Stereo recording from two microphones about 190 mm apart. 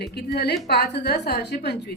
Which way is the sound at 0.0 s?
60° left (ahead or behind).